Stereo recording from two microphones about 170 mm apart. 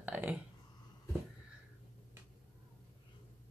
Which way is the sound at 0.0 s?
10° right (ahead or behind).